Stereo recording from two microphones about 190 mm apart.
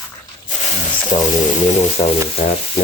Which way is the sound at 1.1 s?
30° left (ahead or behind).